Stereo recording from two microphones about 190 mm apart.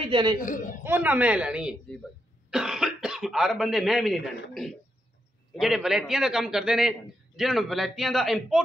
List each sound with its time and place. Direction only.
0.0 s speech: 25° right (ahead or behind)
0.4 s a man's voice: 45° left (ahead or behind)
0.8 s a man's voice: 10° right (ahead or behind)